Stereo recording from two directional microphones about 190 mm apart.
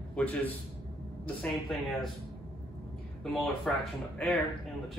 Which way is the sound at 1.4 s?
Centre (ahead or behind).